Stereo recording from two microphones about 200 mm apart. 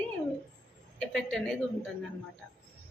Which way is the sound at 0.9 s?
5° left (ahead or behind).